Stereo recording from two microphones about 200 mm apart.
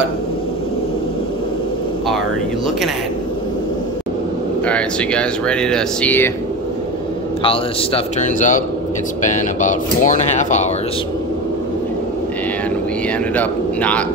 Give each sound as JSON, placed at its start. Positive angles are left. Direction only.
{"t": 4.6, "sound": "speech", "side_deg": 5}
{"t": 7.4, "sound": "speech", "side_deg": 35}
{"t": 13.4, "sound": "speech", "side_deg": 5}